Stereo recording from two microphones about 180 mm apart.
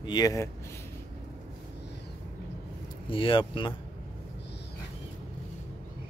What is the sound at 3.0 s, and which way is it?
Speech, 30° left (ahead or behind).